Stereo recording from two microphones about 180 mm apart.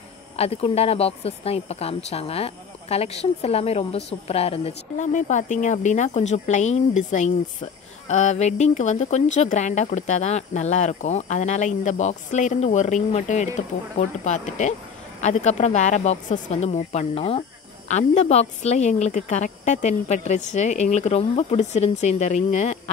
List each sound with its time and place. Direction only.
0.4 s speech: 35° left (ahead or behind)